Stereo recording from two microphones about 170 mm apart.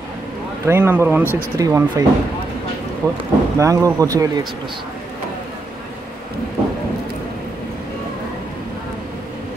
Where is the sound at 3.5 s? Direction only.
20° right (ahead or behind).